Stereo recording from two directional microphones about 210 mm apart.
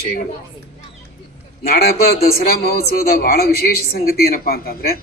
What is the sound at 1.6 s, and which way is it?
A woman's voice, 45° left (ahead or behind).